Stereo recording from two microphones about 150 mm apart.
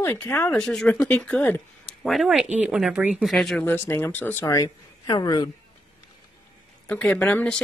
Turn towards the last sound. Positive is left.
turn(degrees=10)  # may be behind; listen again after turning